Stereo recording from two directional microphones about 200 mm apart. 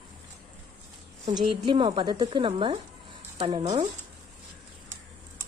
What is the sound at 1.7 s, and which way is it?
Speech, 25° right (ahead or behind).